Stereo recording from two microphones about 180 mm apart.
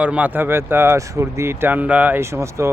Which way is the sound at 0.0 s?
10° right (ahead or behind).